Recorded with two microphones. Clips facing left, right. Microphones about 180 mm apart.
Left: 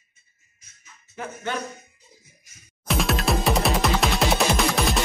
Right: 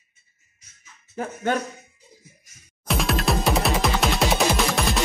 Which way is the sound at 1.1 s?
45° right (ahead or behind).